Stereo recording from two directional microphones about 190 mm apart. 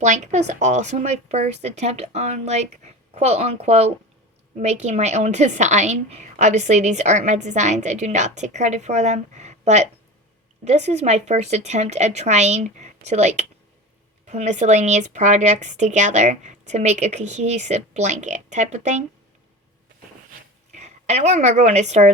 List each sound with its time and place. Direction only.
0.0 s a woman's voice: 35° right (ahead or behind)
20.7 s a woman's voice: 35° right (ahead or behind)